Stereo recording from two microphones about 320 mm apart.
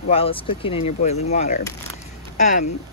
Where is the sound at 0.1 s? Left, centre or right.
Centre.